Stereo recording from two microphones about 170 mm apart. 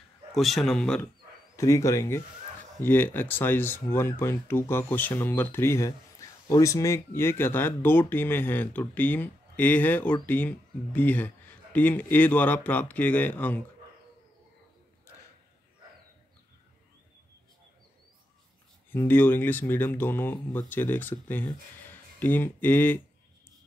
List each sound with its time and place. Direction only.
0.3 s a man's voice: centre (ahead or behind)
1.6 s speech: 15° left (ahead or behind)
18.9 s speech: 10° left (ahead or behind)